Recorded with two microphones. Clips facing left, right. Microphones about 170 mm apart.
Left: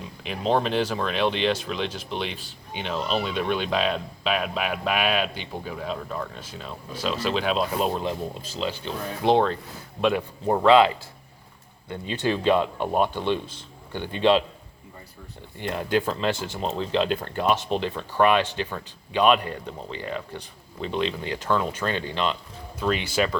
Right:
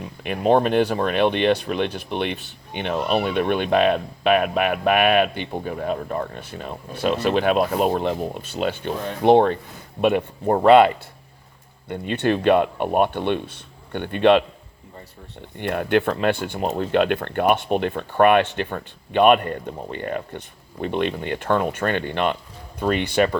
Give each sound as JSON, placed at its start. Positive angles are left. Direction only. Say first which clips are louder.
{"t": 0.2, "sound": "speech", "louder": "right 6 dB", "side_deg": -55}
{"t": 15.5, "sound": "speech", "louder": "right 4 dB", "side_deg": -60}